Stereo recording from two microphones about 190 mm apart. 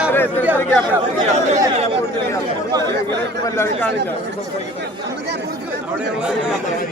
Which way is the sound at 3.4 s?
15° left (ahead or behind).